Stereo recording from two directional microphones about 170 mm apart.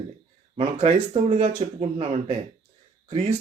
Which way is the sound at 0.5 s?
40° right (ahead or behind).